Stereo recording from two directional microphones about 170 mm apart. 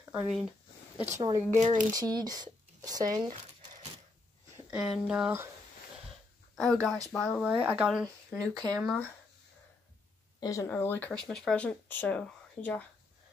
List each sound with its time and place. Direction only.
0.0 s a sound: 10° right (ahead or behind)
1.6 s speech: 45° right (ahead or behind)
1.9 s speech: 20° right (ahead or behind)
4.6 s speech: 5° right (ahead or behind)
6.5 s speech: 5° left (ahead or behind)
7.4 s speech: 5° right (ahead or behind)
10.4 s speech: 20° left (ahead or behind)